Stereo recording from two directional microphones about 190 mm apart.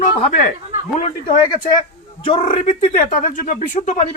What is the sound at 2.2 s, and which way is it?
Speech, 25° left (ahead or behind).